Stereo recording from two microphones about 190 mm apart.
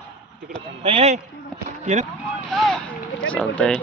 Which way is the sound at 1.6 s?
40° right (ahead or behind).